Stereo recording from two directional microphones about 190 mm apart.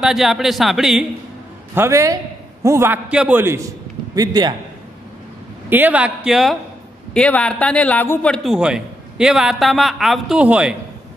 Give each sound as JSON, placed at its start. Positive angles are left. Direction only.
{"t": 0.0, "sound": "a man's voice", "side_deg": 0}
{"t": 1.8, "sound": "a man's voice", "side_deg": -15}
{"t": 5.7, "sound": "a man's voice", "side_deg": -10}